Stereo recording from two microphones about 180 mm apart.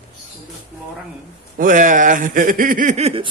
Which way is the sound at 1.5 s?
45° right (ahead or behind).